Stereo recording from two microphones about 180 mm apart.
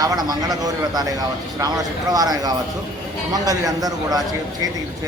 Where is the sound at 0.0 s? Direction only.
20° right (ahead or behind).